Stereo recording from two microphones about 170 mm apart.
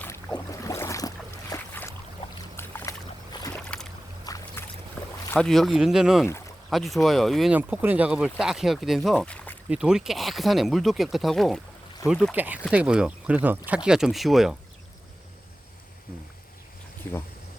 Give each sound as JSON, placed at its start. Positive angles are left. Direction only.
{"t": 0.0, "sound": "boat", "side_deg": 10}
{"t": 4.2, "sound": "boat", "side_deg": 20}
{"t": 5.0, "sound": "boat", "side_deg": 5}
{"t": 5.3, "sound": "speech", "side_deg": 5}
{"t": 6.2, "sound": "speech", "side_deg": 15}
{"t": 6.7, "sound": "speech", "side_deg": 0}
{"t": 7.5, "sound": "speech", "side_deg": -10}
{"t": 9.6, "sound": "speech", "side_deg": -5}
{"t": 17.0, "sound": "speech", "side_deg": 10}